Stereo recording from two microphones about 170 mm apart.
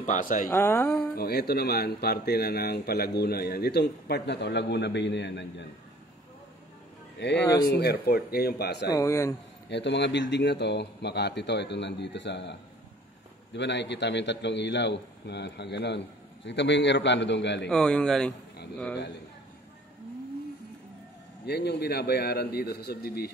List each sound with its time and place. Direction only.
0.0 s speech: 50° left (ahead or behind)
0.5 s speech: 15° left (ahead or behind)
1.1 s speech: 65° left (ahead or behind); by 5.7 s 90° left
7.2 s speech: 90° left
7.6 s speech: 70° left (ahead or behind)
8.9 s speech: 20° left (ahead or behind)
9.7 s speech: 90° left
17.6 s speech: 5° left (ahead or behind)
21.5 s speech: 75° left (ahead or behind)